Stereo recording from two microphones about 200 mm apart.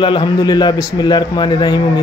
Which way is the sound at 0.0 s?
25° left (ahead or behind).